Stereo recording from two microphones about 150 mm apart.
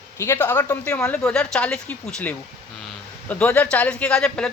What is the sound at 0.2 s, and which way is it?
Speech, 15° left (ahead or behind).